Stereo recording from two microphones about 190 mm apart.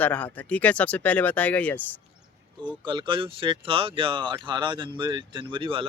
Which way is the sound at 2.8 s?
25° right (ahead or behind).